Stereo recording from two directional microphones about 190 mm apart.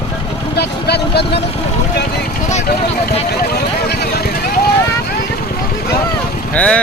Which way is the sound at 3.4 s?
55° left (ahead or behind).